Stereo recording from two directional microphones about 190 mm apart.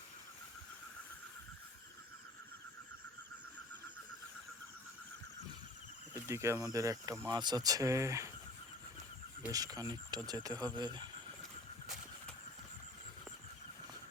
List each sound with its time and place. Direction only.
6.1 s speech: 15° right (ahead or behind)
9.5 s speech: 20° right (ahead or behind)